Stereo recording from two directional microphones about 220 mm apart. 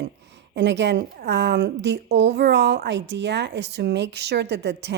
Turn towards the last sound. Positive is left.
turn(degrees=-50)  # may be behind; listen again after turning